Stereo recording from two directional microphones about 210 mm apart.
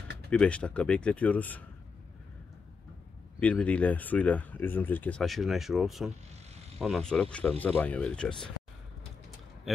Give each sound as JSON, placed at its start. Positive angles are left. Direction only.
{"t": 0.3, "sound": "speech", "side_deg": 5}
{"t": 3.3, "sound": "speech", "side_deg": 5}
{"t": 6.5, "sound": "a sound", "side_deg": -30}
{"t": 6.8, "sound": "speech", "side_deg": 0}